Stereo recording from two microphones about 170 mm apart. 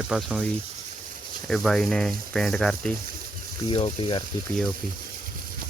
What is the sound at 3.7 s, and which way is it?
Speech, 30° left (ahead or behind).